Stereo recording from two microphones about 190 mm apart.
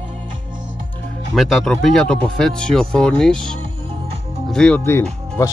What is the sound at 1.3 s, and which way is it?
Speech, centre (ahead or behind).